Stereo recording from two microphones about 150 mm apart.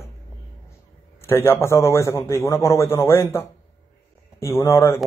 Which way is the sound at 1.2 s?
15° left (ahead or behind).